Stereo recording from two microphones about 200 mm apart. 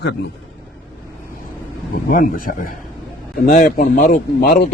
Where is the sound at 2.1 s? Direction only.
45° left (ahead or behind).